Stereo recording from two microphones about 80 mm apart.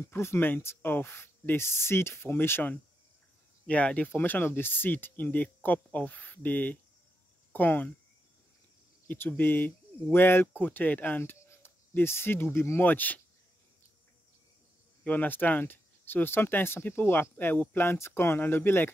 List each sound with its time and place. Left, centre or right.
0.1 s speech: left
9.0 s speech: left
15.0 s speech: left